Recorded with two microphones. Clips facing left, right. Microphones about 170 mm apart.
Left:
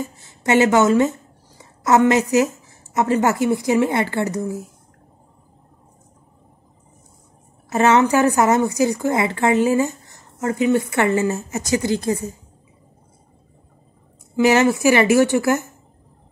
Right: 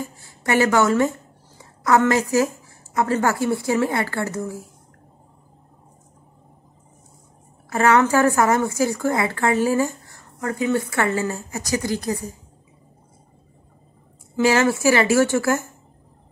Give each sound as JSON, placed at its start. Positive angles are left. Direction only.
{"t": 0.0, "sound": "a woman's voice", "side_deg": 20}
{"t": 7.7, "sound": "a woman's voice", "side_deg": 20}
{"t": 14.3, "sound": "a woman's voice", "side_deg": 20}